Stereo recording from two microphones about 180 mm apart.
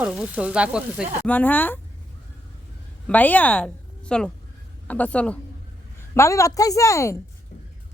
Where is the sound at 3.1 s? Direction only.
10° left (ahead or behind).